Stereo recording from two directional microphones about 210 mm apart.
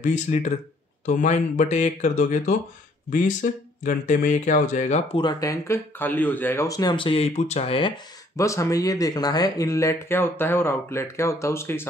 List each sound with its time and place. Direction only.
0.0 s speech: 35° left (ahead or behind)
3.8 s speech: 35° left (ahead or behind); by 11.9 s 10° left (ahead or behind)